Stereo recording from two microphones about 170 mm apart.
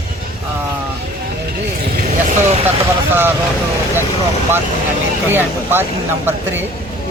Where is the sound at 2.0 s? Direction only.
40° right (ahead or behind).